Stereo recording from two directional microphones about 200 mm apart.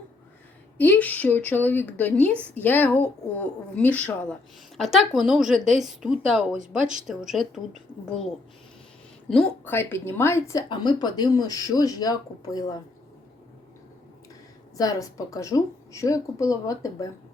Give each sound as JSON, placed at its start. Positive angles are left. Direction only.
{"t": 0.8, "sound": "a woman's voice", "side_deg": 10}
{"t": 9.3, "sound": "a woman's voice", "side_deg": 10}
{"t": 14.8, "sound": "a woman's voice", "side_deg": 15}